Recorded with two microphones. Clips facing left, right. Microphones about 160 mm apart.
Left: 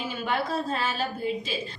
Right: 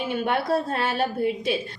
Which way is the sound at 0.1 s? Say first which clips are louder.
Right 6 dB; 60° right (ahead or behind).